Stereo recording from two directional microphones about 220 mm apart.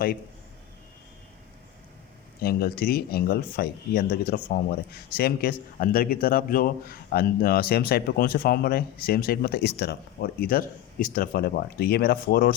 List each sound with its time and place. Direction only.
2.4 s speech: 45° left (ahead or behind)